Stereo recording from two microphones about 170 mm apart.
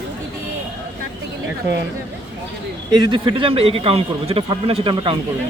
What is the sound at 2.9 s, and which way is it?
Speech, 25° right (ahead or behind).